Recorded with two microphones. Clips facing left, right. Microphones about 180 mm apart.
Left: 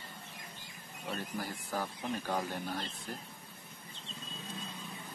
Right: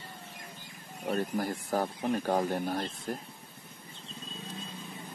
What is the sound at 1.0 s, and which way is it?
Speech, 45° right (ahead or behind).